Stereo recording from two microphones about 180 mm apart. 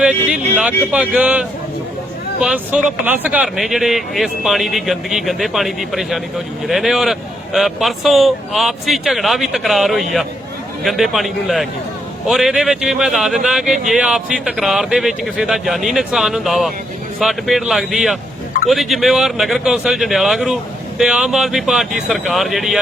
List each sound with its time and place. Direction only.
0.5 s speech: 5° right (ahead or behind)